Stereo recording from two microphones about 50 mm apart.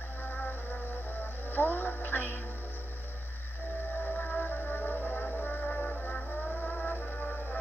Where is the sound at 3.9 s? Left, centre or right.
Left.